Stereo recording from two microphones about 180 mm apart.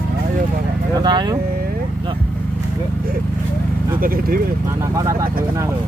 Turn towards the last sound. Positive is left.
turn(degrees=-20)  # may be behind; listen again after turning